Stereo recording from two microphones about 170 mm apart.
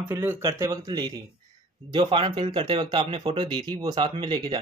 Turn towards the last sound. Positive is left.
turn(degrees=-25)  # may be behind; listen again after turning